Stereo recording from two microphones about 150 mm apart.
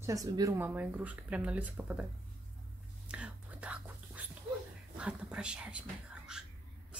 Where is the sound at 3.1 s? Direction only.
10° right (ahead or behind).